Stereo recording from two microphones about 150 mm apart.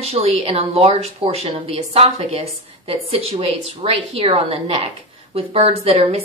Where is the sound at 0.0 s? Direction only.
45° right (ahead or behind).